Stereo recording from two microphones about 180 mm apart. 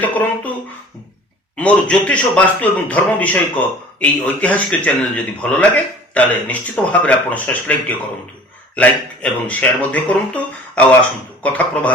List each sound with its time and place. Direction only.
0.0 s a man's voice: 10° left (ahead or behind)
1.5 s a man's voice: 5° left (ahead or behind)